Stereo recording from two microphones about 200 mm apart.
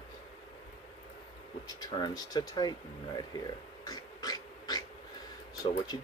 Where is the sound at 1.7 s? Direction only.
20° left (ahead or behind).